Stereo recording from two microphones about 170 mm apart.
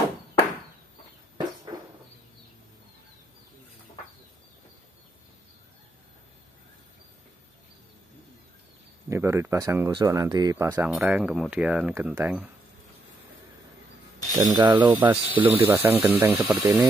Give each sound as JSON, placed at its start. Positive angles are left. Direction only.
{"t": 1.7, "sound": "a sound", "side_deg": -30}
{"t": 9.1, "sound": "speech", "side_deg": -15}
{"t": 14.4, "sound": "speech", "side_deg": -20}
{"t": 14.9, "sound": "speech", "side_deg": -10}